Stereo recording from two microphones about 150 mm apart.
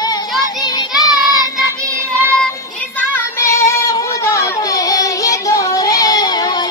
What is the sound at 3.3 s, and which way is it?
Child singing, 20° left (ahead or behind).